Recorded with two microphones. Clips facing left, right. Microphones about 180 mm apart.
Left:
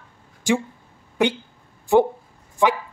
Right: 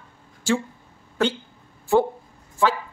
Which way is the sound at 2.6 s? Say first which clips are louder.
Left 2 dB; 20° left (ahead or behind).